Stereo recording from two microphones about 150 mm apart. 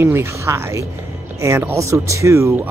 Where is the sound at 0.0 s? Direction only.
15° right (ahead or behind).